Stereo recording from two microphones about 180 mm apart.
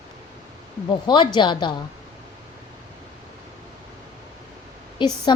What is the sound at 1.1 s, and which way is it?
Speech, 25° left (ahead or behind).